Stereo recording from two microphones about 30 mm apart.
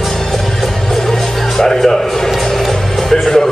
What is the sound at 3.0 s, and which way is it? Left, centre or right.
Music, centre.